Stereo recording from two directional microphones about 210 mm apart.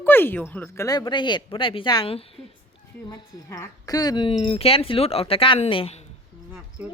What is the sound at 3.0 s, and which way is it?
A woman's voice, 15° left (ahead or behind).